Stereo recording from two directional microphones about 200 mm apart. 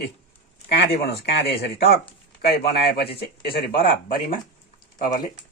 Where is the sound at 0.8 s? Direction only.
55° left (ahead or behind).